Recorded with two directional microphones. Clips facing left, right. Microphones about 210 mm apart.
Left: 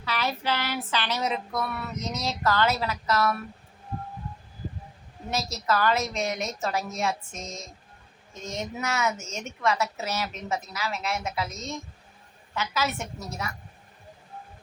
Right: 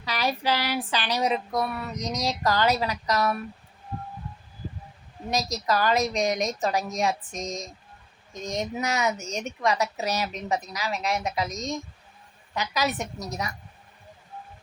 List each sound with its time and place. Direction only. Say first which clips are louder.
0.0 s a woman's voice: right 2 dB; 15° right (ahead or behind)
5.3 s a woman's voice: right 1 dB; 15° right (ahead or behind)